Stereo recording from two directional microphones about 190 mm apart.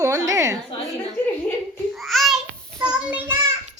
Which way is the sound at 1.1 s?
10° left (ahead or behind).